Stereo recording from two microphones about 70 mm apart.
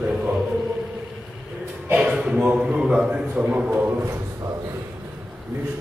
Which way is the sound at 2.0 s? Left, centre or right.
Centre.